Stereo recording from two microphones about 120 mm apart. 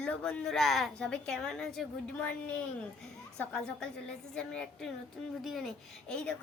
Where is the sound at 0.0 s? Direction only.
10° left (ahead or behind).